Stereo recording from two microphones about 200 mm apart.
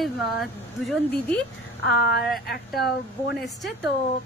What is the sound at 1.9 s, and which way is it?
Speech, 55° left (ahead or behind).